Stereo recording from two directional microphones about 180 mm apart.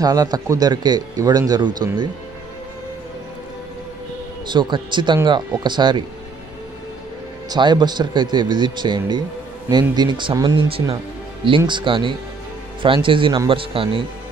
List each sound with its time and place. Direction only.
0.0 s a man's voice: 20° right (ahead or behind)
4.5 s a man's voice: 25° right (ahead or behind)
7.4 s a man's voice: 25° right (ahead or behind)